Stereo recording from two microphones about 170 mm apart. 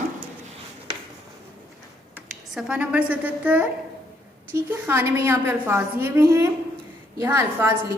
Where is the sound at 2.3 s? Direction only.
5° right (ahead or behind).